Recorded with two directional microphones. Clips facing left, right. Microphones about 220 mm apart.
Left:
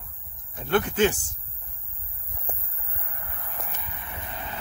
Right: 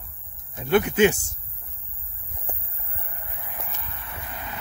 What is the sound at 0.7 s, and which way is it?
Speech, 10° right (ahead or behind).